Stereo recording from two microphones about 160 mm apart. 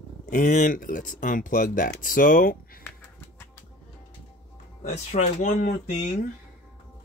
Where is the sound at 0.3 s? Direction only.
55° left (ahead or behind).